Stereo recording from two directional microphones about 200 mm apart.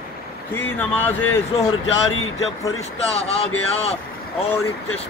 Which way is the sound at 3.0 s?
30° left (ahead or behind).